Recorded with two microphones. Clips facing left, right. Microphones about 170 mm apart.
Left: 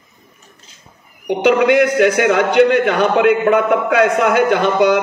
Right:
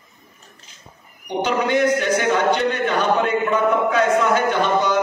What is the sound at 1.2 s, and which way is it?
A man's voice, 70° left (ahead or behind).